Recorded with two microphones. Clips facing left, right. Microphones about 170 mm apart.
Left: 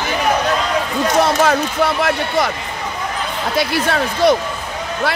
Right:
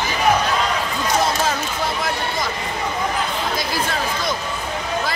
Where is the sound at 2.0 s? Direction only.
70° left (ahead or behind).